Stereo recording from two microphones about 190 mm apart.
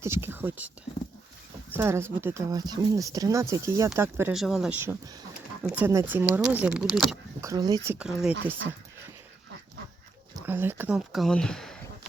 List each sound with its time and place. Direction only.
0.0 s speech: 15° right (ahead or behind)
1.7 s speech: 15° right (ahead or behind)
7.4 s speech: 20° right (ahead or behind)
7.9 s speech: 5° right (ahead or behind)
10.4 s speech: 10° right (ahead or behind)